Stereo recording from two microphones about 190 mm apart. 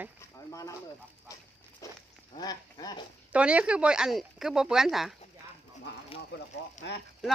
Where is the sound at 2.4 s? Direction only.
20° left (ahead or behind).